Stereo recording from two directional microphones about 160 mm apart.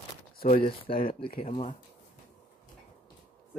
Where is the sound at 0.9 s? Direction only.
40° left (ahead or behind).